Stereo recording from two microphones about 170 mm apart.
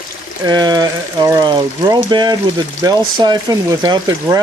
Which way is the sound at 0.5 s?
25° right (ahead or behind).